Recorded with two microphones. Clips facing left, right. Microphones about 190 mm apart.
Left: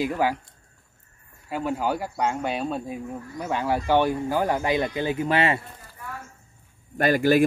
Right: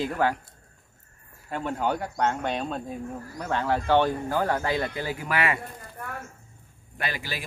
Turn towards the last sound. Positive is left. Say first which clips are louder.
# left 15 dB
turn(degrees=50)  # may be behind; listen again after turning